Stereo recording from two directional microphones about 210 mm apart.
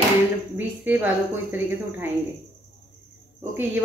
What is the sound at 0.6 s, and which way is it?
Speech, 10° right (ahead or behind).